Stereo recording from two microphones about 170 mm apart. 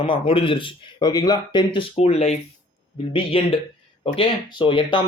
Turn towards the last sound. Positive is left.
turn(degrees=25)  # may be behind; listen again after turning